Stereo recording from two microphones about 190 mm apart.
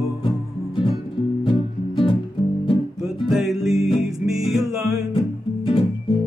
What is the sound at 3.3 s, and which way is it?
Music, centre (ahead or behind).